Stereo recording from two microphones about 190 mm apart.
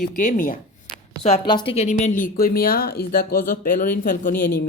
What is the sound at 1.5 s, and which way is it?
Speech, 25° left (ahead or behind).